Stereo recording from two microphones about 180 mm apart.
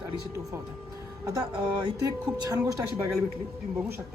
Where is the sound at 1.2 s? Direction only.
20° right (ahead or behind).